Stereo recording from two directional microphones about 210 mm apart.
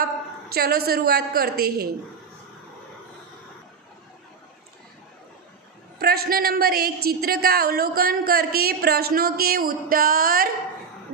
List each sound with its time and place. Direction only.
0.6 s a woman's voice: 45° right (ahead or behind)
5.9 s a woman's voice: 45° right (ahead or behind)